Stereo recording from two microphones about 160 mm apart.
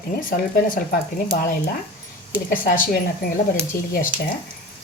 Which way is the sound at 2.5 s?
60° left (ahead or behind).